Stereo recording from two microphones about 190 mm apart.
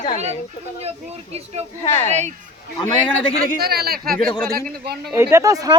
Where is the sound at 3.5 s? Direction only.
55° right (ahead or behind).